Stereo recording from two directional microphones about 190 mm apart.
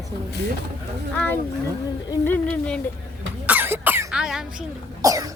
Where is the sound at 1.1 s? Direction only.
10° left (ahead or behind).